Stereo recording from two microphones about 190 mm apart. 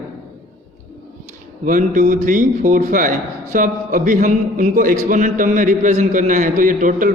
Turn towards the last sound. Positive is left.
turn(degrees=-45)  # may be behind; listen again after turning